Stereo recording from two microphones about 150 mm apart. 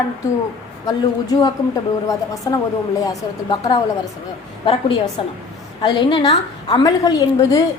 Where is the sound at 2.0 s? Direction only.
20° left (ahead or behind).